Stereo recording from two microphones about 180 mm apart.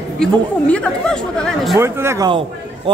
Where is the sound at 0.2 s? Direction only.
5° left (ahead or behind).